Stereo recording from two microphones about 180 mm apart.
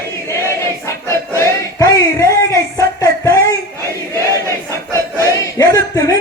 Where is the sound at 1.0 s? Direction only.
15° left (ahead or behind).